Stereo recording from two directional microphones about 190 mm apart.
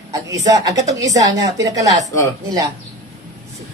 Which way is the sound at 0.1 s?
20° right (ahead or behind).